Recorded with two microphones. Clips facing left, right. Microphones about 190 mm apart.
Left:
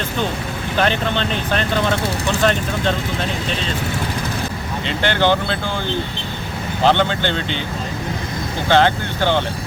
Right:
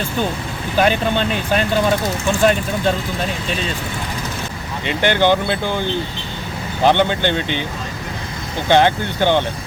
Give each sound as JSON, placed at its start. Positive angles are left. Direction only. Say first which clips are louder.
{"t": 0.8, "sound": "speech", "louder": "right 3 dB", "side_deg": -10}
{"t": 4.9, "sound": "speech", "louder": "right 2 dB", "side_deg": -15}
{"t": 6.8, "sound": "speech", "louder": "right 2 dB", "side_deg": -15}
{"t": 8.7, "sound": "speech", "louder": "right 1 dB", "side_deg": -15}